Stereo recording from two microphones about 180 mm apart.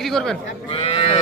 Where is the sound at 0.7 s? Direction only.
30° left (ahead or behind).